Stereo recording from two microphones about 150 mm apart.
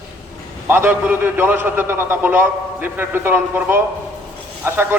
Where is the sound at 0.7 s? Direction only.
15° right (ahead or behind).